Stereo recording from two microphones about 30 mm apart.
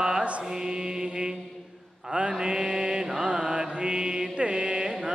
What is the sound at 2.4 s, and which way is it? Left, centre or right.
Mantra, right.